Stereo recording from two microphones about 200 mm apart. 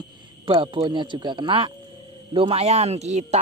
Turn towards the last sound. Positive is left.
turn(degrees=-35)  # may be behind; listen again after turning